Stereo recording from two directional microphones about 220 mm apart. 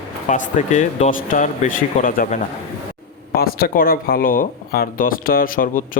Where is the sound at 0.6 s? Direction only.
30° left (ahead or behind).